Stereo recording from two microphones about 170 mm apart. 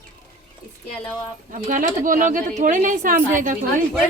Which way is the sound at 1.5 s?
50° right (ahead or behind).